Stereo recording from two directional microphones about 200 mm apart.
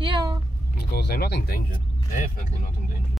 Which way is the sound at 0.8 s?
55° left (ahead or behind).